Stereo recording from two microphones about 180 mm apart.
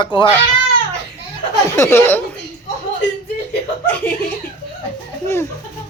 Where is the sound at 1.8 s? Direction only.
15° left (ahead or behind).